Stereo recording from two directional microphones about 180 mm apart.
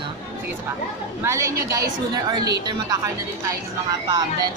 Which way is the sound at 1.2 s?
15° right (ahead or behind).